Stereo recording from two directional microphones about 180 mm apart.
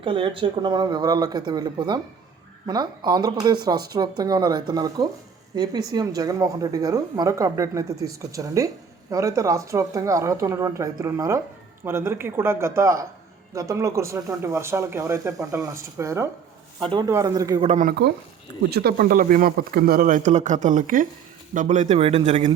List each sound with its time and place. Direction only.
0.0 s a woman's voice: 30° right (ahead or behind)
17.7 s speech: 45° right (ahead or behind)
18.7 s speech: 60° right (ahead or behind); by 22.5 s 40° right (ahead or behind)